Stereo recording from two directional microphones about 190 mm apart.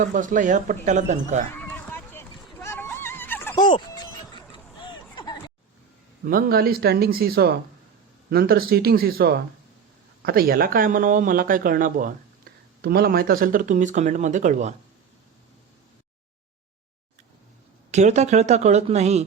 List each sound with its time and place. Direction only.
0.0 s a woman's voice: 45° right (ahead or behind)
1.5 s a sound: 10° left (ahead or behind)
6.2 s speech: 50° right (ahead or behind)
17.9 s a woman's voice: 35° right (ahead or behind)